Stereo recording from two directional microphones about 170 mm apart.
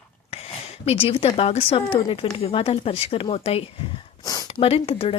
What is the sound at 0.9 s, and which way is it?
Speech, 35° left (ahead or behind).